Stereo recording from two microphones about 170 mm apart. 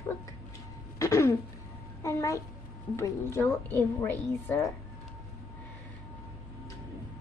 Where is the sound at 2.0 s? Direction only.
15° left (ahead or behind).